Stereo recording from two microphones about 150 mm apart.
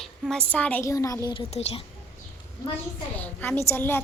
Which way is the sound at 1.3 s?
35° left (ahead or behind).